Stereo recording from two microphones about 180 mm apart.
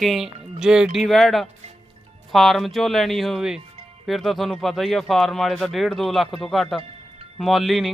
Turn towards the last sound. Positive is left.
turn(degrees=0)  # may be behind; listen again after turning